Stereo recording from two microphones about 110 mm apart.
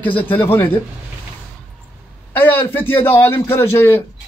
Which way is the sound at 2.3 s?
15° left (ahead or behind).